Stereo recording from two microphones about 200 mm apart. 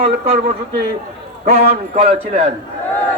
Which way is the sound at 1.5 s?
30° right (ahead or behind).